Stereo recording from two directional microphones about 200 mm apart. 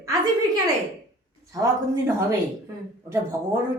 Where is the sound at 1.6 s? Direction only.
15° right (ahead or behind).